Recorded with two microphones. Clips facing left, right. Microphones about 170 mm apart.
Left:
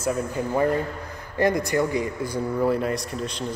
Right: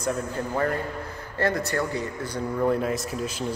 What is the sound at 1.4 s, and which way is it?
A man's voice, 15° left (ahead or behind).